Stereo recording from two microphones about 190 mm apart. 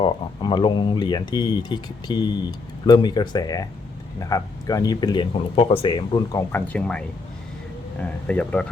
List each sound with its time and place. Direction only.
0.0 s speech: 25° left (ahead or behind)
6.7 s speech: 5° left (ahead or behind)
8.3 s speech: 5° left (ahead or behind)